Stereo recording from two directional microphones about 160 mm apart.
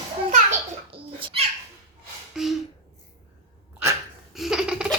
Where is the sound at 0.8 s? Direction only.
35° right (ahead or behind).